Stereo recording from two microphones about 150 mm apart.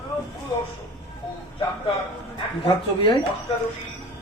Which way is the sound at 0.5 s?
30° left (ahead or behind).